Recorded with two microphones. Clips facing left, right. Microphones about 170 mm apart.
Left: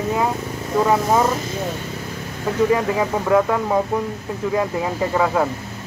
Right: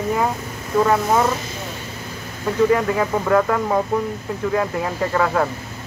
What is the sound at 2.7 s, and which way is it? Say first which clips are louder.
Speech: even; 10° left (ahead or behind).